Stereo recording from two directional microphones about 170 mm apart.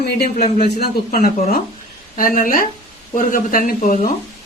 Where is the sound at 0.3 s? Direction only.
45° left (ahead or behind).